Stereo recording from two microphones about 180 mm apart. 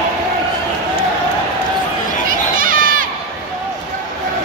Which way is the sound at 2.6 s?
50° right (ahead or behind).